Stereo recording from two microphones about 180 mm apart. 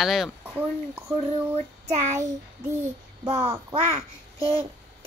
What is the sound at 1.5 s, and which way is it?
Child singing, 40° right (ahead or behind).